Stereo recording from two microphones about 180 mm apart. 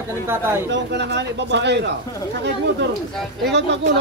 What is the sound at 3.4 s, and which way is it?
Speech, 75° right (ahead or behind).